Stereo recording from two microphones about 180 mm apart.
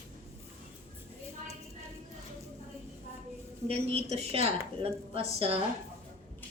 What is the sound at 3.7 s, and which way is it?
A woman's voice, 35° right (ahead or behind).